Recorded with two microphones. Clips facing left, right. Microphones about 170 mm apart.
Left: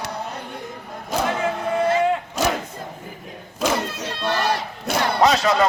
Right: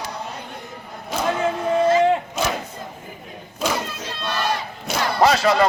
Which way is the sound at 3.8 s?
65° left (ahead or behind).